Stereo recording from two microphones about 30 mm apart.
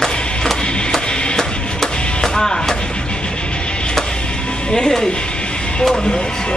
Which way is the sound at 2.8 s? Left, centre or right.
Left.